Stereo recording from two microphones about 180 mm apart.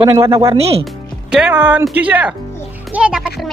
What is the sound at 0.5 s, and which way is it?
Speech, 35° right (ahead or behind).